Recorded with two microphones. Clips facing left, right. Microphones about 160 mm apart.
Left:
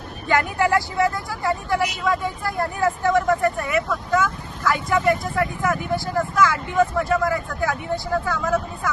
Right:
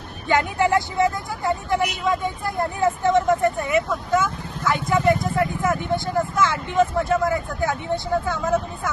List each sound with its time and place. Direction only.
0.3 s speech: 20° right (ahead or behind)